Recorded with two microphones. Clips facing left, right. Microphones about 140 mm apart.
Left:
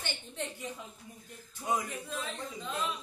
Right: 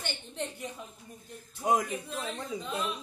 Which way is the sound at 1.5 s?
60° right (ahead or behind).